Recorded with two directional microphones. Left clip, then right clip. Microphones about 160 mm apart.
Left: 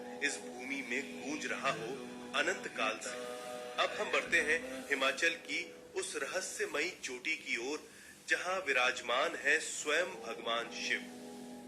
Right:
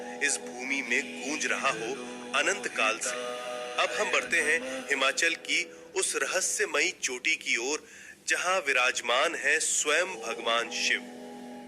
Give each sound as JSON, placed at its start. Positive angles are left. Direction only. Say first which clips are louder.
{"t": 0.2, "sound": "speech", "louder": "right 7 dB", "side_deg": -35}